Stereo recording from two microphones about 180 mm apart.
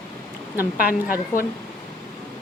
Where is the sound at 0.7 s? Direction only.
55° left (ahead or behind).